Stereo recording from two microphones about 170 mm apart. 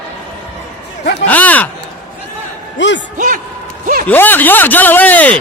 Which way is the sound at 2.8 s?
90° left.